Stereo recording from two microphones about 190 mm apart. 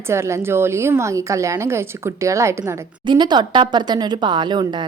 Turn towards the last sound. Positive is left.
turn(degrees=-25)  # may be behind; listen again after turning